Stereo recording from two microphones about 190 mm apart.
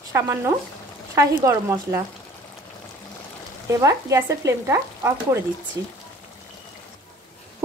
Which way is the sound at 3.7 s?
15° right (ahead or behind).